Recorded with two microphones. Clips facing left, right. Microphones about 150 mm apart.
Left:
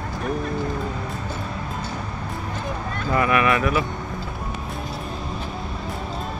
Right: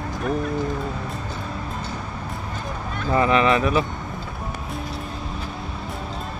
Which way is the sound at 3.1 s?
25° right (ahead or behind).